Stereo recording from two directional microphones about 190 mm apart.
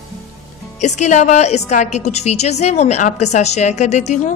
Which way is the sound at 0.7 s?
40° left (ahead or behind).